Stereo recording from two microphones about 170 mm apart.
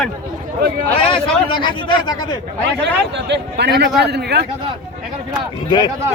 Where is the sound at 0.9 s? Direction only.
30° left (ahead or behind).